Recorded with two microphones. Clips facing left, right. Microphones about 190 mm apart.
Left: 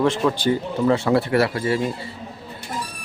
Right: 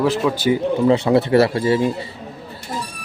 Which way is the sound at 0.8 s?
20° right (ahead or behind).